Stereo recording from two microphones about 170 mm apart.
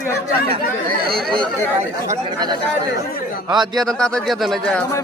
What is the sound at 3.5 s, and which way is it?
Speech, 25° right (ahead or behind).